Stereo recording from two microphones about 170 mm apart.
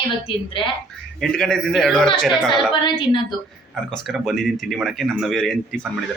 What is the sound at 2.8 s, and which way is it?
Speech, 30° left (ahead or behind).